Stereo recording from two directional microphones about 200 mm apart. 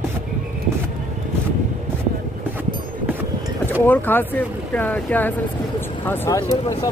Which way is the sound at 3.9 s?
10° left (ahead or behind).